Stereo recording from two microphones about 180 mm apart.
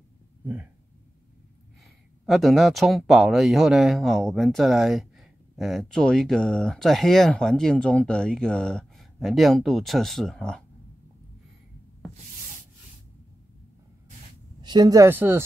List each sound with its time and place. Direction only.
2.2 s speech: centre (ahead or behind)
14.6 s speech: 25° right (ahead or behind)